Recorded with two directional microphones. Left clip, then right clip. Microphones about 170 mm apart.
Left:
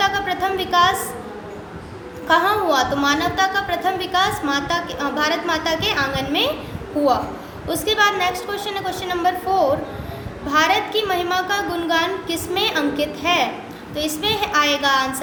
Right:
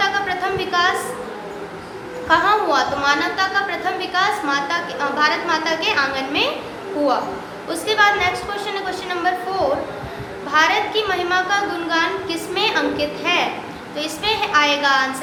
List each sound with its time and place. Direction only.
0.0 s a sound: 50° left (ahead or behind)
2.2 s a woman's voice: 50° left (ahead or behind)
7.7 s a woman's voice: 50° left (ahead or behind)